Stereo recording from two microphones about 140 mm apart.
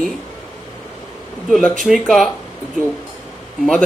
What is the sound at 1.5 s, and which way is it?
Speech, 5° left (ahead or behind).